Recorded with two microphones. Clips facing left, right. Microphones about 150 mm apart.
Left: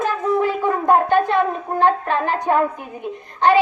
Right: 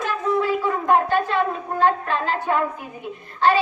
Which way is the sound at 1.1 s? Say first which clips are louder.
Left 4 dB; 20° left (ahead or behind).